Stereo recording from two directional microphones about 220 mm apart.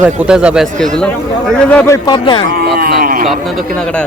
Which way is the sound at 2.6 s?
45° right (ahead or behind).